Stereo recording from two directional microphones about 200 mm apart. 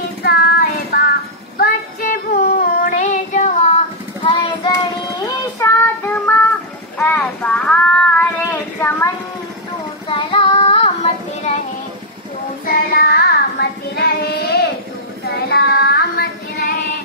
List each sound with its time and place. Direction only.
0.2 s child singing: 50° left (ahead or behind); by 3.7 s 35° left (ahead or behind)
4.2 s child singing: 20° left (ahead or behind); by 8.3 s 5° left (ahead or behind)
8.8 s a sound: 10° left (ahead or behind)
10.0 s child singing: 25° left (ahead or behind)
12.6 s child singing: 50° left (ahead or behind)